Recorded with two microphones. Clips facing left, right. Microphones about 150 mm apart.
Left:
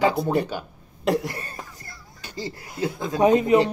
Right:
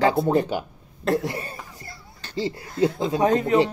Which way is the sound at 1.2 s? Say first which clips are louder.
Right 4 dB; 20° right (ahead or behind).